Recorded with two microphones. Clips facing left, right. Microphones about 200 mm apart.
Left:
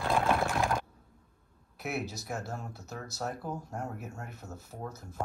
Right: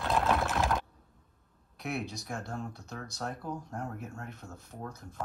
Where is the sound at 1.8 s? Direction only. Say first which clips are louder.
Left 1 dB; 5° left (ahead or behind).